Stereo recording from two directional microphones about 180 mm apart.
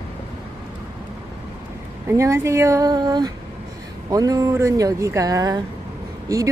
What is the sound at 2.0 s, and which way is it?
A woman's voice, 15° right (ahead or behind).